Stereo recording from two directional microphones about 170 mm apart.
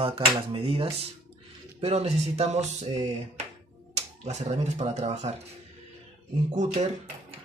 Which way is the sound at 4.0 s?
40° right (ahead or behind).